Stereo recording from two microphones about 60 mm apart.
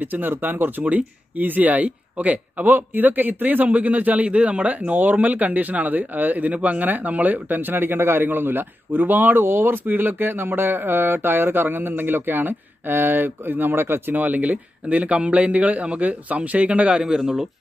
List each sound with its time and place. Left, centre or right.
0.0 s speech: right
17.0 s a man's voice: centre